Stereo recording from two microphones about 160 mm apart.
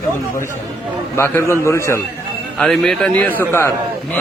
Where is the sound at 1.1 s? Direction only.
15° left (ahead or behind).